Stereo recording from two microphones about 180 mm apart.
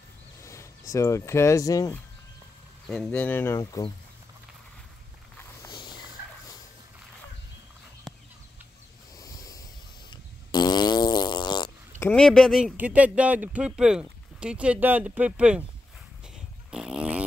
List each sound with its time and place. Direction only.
0.4 s speech: 15° left (ahead or behind)
2.9 s speech: 5° left (ahead or behind)
5.4 s a sound: 15° left (ahead or behind)
5.8 s turkey: 25° left (ahead or behind)
9.2 s ocean: 20° left (ahead or behind)
10.0 s fart: 25° left (ahead or behind)
12.0 s speech: 5° left (ahead or behind)
16.7 s a sound: 5° right (ahead or behind)